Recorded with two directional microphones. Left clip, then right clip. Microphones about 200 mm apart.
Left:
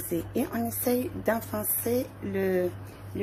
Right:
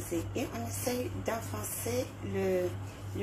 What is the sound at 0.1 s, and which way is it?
A woman's voice, 55° left (ahead or behind).